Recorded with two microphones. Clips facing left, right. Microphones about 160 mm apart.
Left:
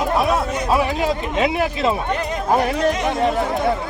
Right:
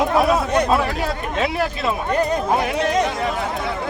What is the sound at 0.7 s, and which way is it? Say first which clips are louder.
Speech: left 2 dB; 15° left (ahead or behind).